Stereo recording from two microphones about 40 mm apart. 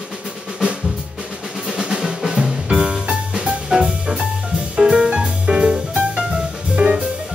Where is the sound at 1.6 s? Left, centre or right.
Centre.